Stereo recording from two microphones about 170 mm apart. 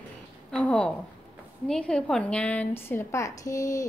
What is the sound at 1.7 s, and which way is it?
A woman's voice, 5° left (ahead or behind).